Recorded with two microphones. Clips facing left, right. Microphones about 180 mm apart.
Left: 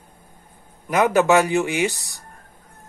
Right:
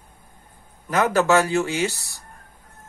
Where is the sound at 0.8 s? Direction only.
15° left (ahead or behind).